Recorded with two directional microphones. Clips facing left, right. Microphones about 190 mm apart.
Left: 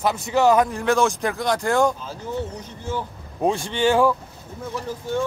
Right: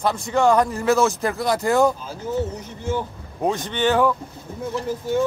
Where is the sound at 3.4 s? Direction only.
15° left (ahead or behind).